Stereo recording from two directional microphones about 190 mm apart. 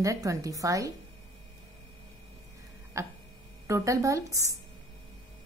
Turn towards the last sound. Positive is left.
turn(degrees=-15)  # may be behind; listen again after turning